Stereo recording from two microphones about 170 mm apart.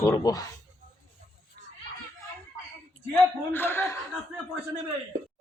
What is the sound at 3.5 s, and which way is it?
Speech, 15° left (ahead or behind).